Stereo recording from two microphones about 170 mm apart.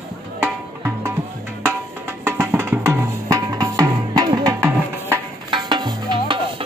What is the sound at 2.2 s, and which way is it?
Music, 15° right (ahead or behind).